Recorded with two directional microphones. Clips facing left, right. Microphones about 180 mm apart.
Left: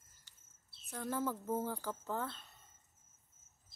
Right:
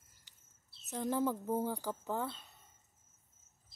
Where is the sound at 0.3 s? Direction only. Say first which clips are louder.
Right 1 dB; 15° right (ahead or behind).